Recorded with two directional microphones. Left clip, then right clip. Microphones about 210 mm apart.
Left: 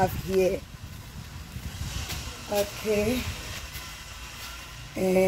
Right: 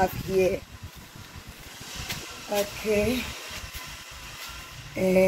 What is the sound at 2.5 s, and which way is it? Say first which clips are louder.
Speech: right 1 dB; 10° left (ahead or behind).